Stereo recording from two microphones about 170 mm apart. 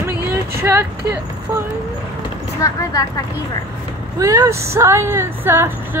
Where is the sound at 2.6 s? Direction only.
20° left (ahead or behind).